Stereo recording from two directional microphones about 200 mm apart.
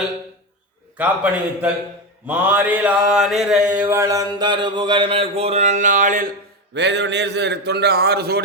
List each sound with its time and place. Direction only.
0.9 s a man's voice: 5° right (ahead or behind)
2.2 s mantra: 10° right (ahead or behind); by 6.2 s 40° right (ahead or behind)
6.7 s a man's voice: 60° right (ahead or behind)